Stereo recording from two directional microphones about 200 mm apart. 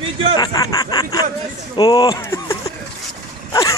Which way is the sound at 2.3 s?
15° left (ahead or behind).